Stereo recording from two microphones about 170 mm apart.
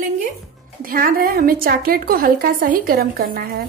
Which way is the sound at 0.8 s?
55° right (ahead or behind).